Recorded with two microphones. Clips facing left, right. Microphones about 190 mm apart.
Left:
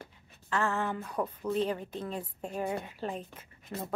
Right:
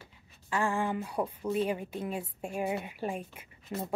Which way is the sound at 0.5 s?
10° right (ahead or behind).